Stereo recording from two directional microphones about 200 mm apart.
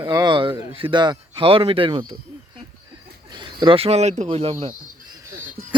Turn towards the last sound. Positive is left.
turn(degrees=-30)  # may be behind; listen again after turning